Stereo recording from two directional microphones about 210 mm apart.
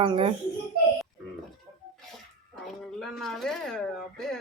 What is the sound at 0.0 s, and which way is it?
Speech, 25° right (ahead or behind).